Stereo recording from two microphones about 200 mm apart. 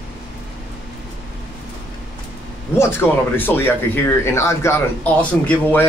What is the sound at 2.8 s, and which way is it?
Speech, 10° left (ahead or behind).